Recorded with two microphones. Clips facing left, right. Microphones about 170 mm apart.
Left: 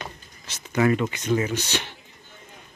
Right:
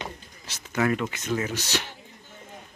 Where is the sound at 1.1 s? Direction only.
Centre (ahead or behind).